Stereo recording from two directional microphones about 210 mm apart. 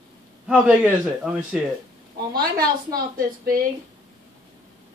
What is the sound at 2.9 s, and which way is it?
Speech, 45° right (ahead or behind).